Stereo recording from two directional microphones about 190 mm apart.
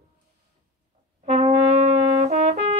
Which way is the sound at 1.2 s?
35° right (ahead or behind).